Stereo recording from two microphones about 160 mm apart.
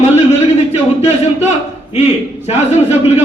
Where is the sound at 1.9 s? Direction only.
40° left (ahead or behind).